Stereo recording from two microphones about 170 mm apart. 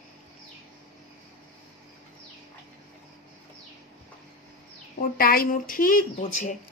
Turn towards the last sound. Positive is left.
turn(degrees=50)  # may be behind; listen again after turning